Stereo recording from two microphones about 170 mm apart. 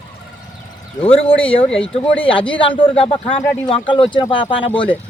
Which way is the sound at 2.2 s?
30° left (ahead or behind).